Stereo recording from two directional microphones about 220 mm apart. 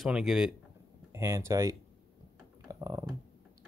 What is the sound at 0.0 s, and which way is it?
Speech, centre (ahead or behind).